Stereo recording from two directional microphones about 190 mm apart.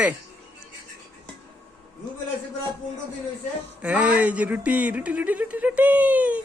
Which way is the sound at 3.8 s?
5° right (ahead or behind).